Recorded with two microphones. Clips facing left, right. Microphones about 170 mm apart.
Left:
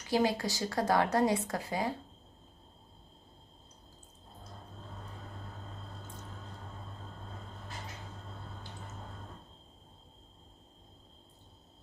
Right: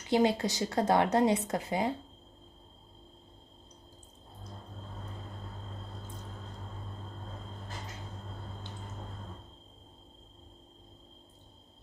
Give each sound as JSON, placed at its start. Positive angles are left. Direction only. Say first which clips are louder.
{"t": 0.1, "sound": "speech", "louder": "right 3 dB", "side_deg": -20}